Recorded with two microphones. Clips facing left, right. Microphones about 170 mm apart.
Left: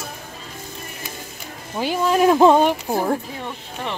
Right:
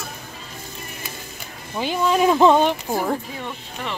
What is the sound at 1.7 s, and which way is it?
Speech, 5° left (ahead or behind).